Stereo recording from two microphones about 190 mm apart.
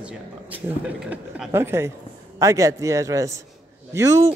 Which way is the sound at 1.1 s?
10° right (ahead or behind).